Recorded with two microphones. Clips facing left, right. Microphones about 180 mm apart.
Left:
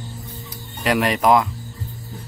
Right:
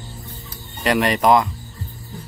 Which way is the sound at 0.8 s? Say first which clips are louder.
Right 1 dB; centre (ahead or behind).